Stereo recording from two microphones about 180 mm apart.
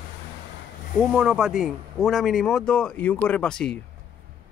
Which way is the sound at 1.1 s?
5° right (ahead or behind).